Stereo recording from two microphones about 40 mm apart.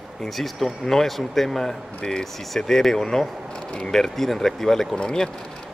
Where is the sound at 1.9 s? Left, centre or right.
Left.